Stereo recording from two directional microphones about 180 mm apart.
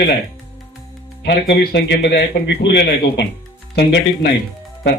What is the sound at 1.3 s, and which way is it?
Speech, 70° left (ahead or behind).